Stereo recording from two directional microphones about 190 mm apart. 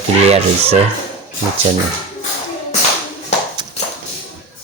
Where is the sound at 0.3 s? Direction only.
30° right (ahead or behind).